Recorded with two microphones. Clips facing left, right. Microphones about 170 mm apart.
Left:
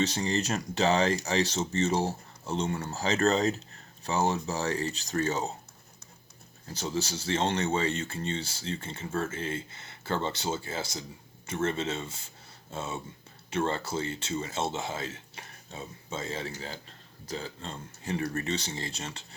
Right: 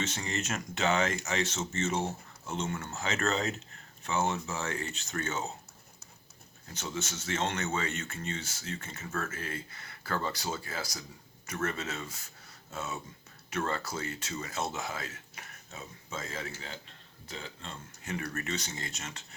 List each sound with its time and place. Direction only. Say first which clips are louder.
0.0 s speech: left 7 dB; 35° left (ahead or behind)
6.7 s speech: left 5 dB; 35° left (ahead or behind)